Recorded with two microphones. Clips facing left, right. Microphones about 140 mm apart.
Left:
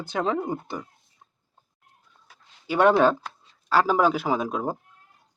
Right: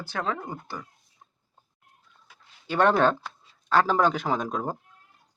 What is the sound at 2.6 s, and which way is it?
Speech, 10° left (ahead or behind).